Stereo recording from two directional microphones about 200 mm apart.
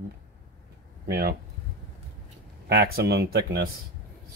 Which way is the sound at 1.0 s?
50° right (ahead or behind).